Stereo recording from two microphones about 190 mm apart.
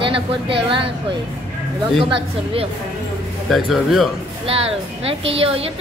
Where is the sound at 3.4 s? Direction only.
Centre (ahead or behind).